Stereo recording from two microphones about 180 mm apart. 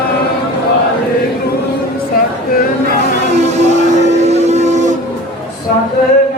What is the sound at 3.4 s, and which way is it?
Vehicle, 40° right (ahead or behind).